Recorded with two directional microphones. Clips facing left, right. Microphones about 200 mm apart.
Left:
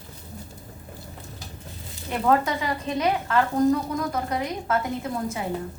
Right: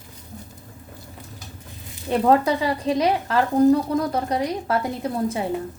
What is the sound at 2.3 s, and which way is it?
Speech, 35° right (ahead or behind).